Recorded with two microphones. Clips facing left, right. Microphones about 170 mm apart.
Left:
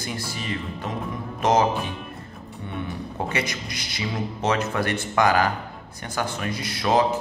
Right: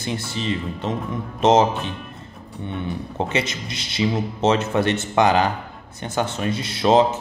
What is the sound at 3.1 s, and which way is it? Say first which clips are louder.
Speech: right 3 dB; 25° right (ahead or behind).